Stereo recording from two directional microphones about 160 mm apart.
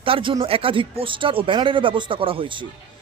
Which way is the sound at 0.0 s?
35° right (ahead or behind).